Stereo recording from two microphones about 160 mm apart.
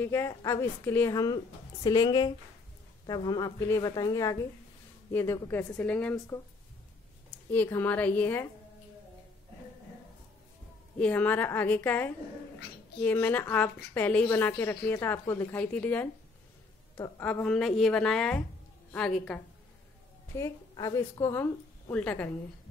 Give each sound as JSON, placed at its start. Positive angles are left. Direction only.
{"t": 0.0, "sound": "a woman's voice", "side_deg": 15}
{"t": 6.1, "sound": "a woman's voice", "side_deg": 20}
{"t": 7.2, "sound": "speech", "side_deg": 10}
{"t": 11.0, "sound": "a woman's voice", "side_deg": 10}
{"t": 17.2, "sound": "a woman's voice", "side_deg": 10}
{"t": 20.3, "sound": "a woman's voice", "side_deg": 20}